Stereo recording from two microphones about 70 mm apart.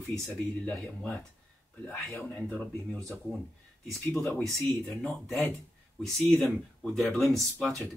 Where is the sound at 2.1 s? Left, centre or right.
Centre.